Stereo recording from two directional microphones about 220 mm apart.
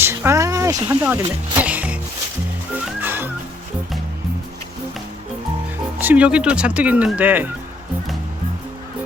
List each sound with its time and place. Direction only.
0.0 s speech: 10° right (ahead or behind)
2.8 s music: 10° right (ahead or behind)
6.0 s speech: 5° right (ahead or behind)